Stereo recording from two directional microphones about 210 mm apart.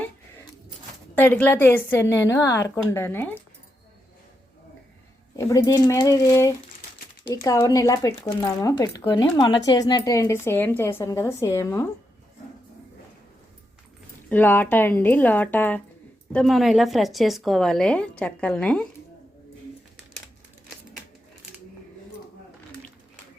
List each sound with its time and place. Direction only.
1.1 s a woman's voice: 10° left (ahead or behind)
5.4 s a woman's voice: 15° left (ahead or behind)
14.3 s a woman's voice: 10° left (ahead or behind)